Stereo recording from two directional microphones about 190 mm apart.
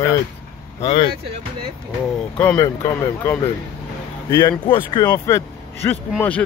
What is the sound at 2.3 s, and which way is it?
Speech, 15° left (ahead or behind).